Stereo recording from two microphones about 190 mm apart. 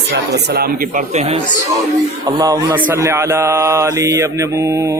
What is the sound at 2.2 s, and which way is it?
Speech, 20° right (ahead or behind).